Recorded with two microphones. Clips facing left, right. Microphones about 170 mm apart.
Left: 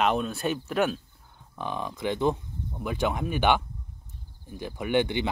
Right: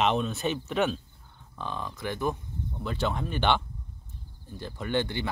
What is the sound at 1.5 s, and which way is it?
Speech, 15° left (ahead or behind).